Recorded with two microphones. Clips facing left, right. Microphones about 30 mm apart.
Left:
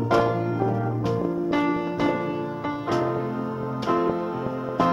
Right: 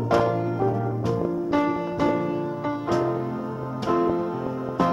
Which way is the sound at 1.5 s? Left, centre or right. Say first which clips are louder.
Right 1 dB; centre.